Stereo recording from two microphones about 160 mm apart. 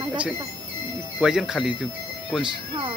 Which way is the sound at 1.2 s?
5° right (ahead or behind).